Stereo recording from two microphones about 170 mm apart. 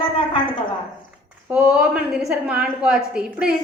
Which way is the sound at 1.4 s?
5° right (ahead or behind).